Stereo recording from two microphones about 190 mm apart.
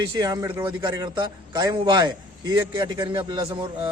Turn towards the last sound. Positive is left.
turn(degrees=-25)  # may be behind; listen again after turning